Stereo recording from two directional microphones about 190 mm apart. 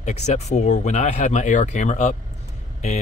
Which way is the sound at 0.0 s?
35° left (ahead or behind).